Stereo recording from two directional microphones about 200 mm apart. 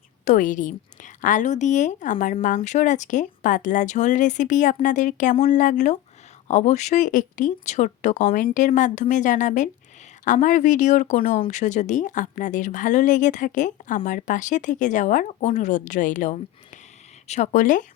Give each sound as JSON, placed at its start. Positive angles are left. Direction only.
{"t": 0.3, "sound": "speech", "side_deg": 40}